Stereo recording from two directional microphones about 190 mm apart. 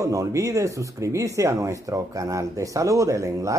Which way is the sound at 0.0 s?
15° right (ahead or behind).